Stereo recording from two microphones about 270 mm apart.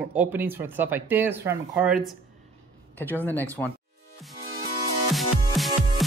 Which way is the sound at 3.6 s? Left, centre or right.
Centre.